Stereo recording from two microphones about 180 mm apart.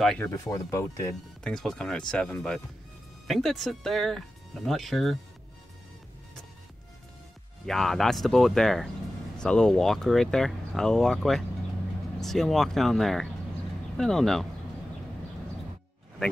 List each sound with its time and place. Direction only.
0.0 s speech: 5° left (ahead or behind)
0.3 s speech: 20° left (ahead or behind)
1.4 s speech: 5° left (ahead or behind)
7.6 s speech: centre (ahead or behind)